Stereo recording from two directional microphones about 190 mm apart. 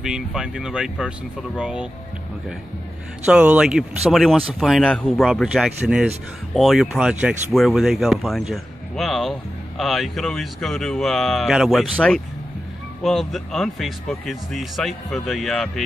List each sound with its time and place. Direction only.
0.0 s speech: 5° right (ahead or behind)
3.3 s speech: 5° right (ahead or behind)